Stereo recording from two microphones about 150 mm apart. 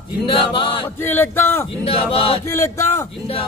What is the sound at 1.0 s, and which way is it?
Speech, 15° left (ahead or behind).